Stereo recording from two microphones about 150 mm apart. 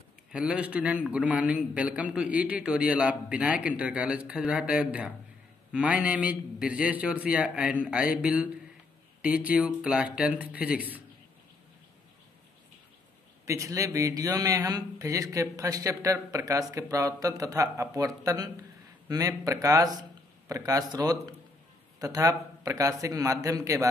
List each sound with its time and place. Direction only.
0.3 s a man's voice: 5° right (ahead or behind)
13.5 s a man's voice: 20° right (ahead or behind)